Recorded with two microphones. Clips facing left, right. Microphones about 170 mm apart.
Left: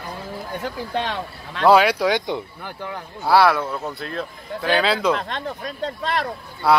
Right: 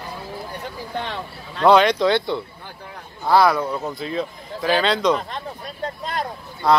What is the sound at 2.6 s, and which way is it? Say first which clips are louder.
Speech: left 7 dB; 90° left.